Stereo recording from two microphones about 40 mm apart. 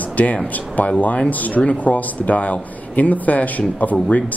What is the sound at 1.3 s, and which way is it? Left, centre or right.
Speech, left.